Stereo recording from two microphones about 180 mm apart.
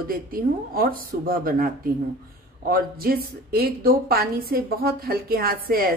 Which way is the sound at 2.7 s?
55° right (ahead or behind).